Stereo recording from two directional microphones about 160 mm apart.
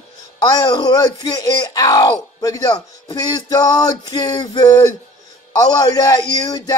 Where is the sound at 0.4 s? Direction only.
25° left (ahead or behind).